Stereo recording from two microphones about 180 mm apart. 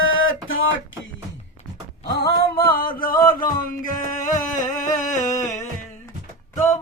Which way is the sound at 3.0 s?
50° left (ahead or behind).